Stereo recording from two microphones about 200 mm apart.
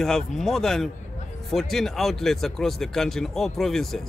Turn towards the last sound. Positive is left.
turn(degrees=0)  # may be behind; listen again after turning